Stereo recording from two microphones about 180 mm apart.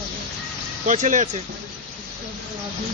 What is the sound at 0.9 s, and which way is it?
Speech, 45° right (ahead or behind).